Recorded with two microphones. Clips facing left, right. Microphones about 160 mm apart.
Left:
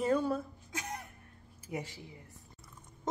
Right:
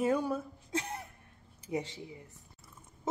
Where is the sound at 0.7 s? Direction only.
30° right (ahead or behind).